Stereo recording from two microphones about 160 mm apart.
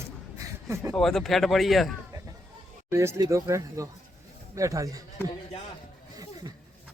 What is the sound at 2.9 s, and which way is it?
Speech, 15° right (ahead or behind).